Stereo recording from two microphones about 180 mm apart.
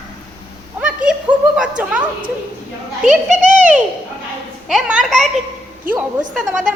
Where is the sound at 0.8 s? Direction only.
5° right (ahead or behind).